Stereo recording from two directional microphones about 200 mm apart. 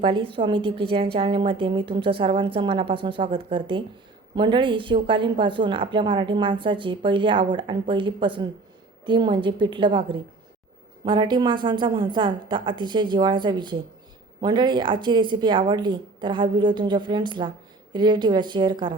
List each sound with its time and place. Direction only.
0.0 s a woman's voice: 25° right (ahead or behind)